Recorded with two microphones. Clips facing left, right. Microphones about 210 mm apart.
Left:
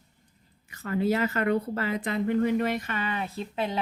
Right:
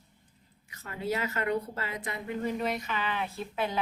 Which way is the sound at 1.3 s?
80° left.